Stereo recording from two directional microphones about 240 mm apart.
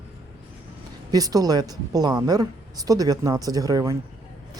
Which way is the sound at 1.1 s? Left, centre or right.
Centre.